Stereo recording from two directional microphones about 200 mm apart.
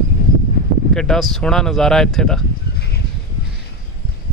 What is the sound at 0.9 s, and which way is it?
Speech, centre (ahead or behind).